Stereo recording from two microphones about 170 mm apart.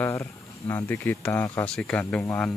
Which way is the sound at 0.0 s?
15° left (ahead or behind).